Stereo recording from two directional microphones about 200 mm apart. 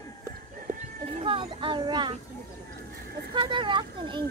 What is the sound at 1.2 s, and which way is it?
Speech, 25° right (ahead or behind).